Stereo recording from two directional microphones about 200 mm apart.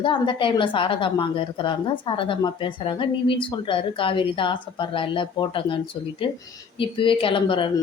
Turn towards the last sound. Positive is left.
turn(degrees=25)  # may be behind; listen again after turning